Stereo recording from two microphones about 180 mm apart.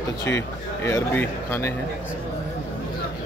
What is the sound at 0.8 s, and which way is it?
Speech, 15° left (ahead or behind).